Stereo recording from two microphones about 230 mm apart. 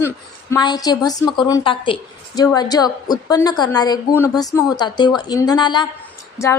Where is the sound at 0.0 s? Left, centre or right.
Centre.